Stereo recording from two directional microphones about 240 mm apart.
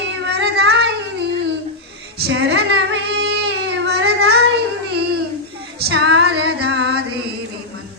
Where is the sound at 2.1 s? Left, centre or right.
Right.